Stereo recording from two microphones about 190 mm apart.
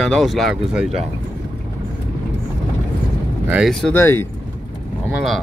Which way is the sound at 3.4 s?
Centre (ahead or behind).